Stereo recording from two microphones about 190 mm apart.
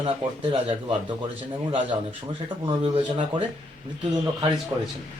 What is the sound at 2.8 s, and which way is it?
Speech, 25° right (ahead or behind).